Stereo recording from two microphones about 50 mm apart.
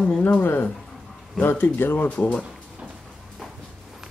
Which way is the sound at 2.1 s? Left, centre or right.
Left.